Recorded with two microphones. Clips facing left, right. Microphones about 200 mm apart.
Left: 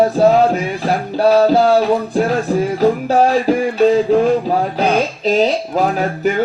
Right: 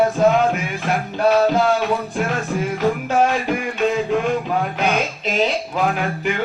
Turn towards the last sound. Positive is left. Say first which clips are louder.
# left 5 dB
turn(degrees=40)  # may be behind; listen again after turning